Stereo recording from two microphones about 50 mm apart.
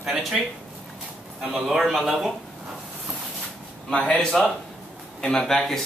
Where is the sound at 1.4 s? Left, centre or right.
Centre.